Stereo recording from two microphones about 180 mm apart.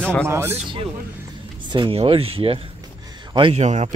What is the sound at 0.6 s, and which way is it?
Speech, 30° right (ahead or behind).